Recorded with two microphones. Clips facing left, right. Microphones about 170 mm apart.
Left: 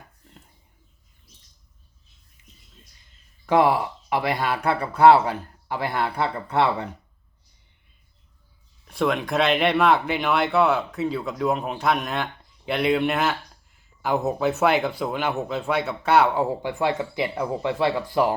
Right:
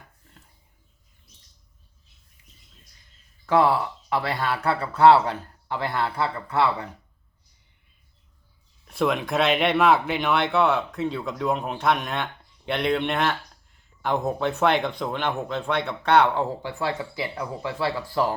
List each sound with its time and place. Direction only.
3.4 s speech: 15° left (ahead or behind)
8.8 s speech: centre (ahead or behind); by 18.3 s 15° left (ahead or behind)